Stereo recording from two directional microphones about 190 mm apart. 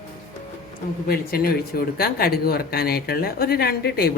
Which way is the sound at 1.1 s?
55° left (ahead or behind).